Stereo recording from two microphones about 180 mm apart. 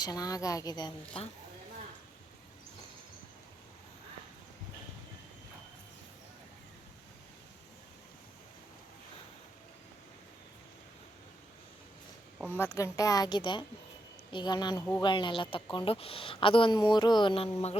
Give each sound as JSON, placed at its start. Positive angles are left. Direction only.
{"t": 0.0, "sound": "a woman's voice", "side_deg": 20}
{"t": 12.5, "sound": "a woman's voice", "side_deg": 15}